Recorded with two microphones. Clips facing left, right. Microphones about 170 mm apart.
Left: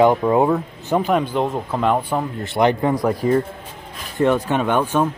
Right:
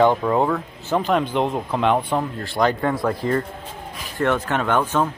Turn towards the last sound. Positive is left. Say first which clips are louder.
# left 2 dB
turn(degrees=15)  # may be behind; listen again after turning